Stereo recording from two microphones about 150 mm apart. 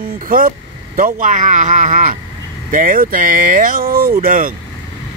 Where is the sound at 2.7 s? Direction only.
65° right (ahead or behind).